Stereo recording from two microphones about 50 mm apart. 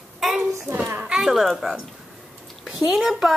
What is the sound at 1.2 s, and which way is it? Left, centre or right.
A woman's voice, centre.